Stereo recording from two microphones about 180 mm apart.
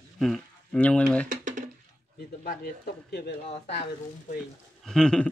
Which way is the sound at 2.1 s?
55° left (ahead or behind).